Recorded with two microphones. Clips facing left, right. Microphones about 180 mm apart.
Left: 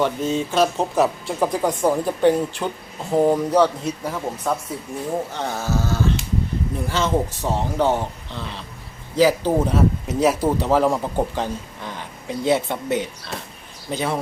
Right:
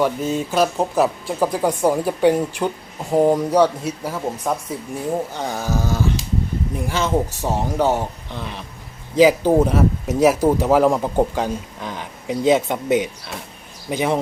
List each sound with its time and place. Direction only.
0.0 s speech: 5° right (ahead or behind)